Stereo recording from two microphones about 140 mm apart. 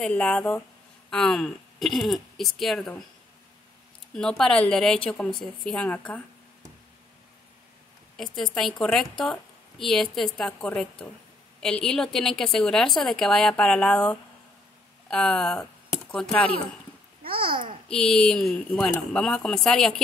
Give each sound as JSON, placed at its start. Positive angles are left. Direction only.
{"t": 0.0, "sound": "a woman's voice", "side_deg": 10}
{"t": 4.1, "sound": "a woman's voice", "side_deg": 5}
{"t": 8.2, "sound": "a woman's voice", "side_deg": 5}
{"t": 17.3, "sound": "a child's voice", "side_deg": -90}
{"t": 17.8, "sound": "a woman's voice", "side_deg": 5}